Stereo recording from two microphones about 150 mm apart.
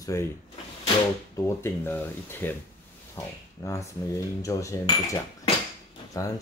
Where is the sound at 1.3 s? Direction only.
15° left (ahead or behind).